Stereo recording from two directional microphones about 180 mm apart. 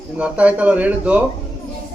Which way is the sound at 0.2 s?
5° right (ahead or behind).